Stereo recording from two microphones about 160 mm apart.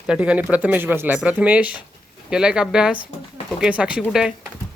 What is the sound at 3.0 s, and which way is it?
Speech, 30° left (ahead or behind).